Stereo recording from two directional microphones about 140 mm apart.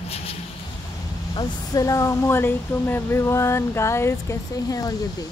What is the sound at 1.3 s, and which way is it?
Speech, 30° left (ahead or behind).